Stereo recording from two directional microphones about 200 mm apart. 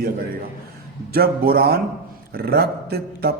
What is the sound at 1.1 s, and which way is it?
A man's voice, 50° right (ahead or behind).